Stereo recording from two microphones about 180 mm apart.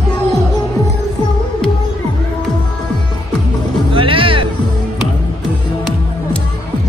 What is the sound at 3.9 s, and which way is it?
Music, 30° right (ahead or behind).